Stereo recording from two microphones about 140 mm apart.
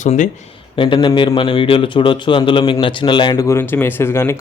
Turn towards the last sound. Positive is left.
turn(degrees=20)  # may be behind; listen again after turning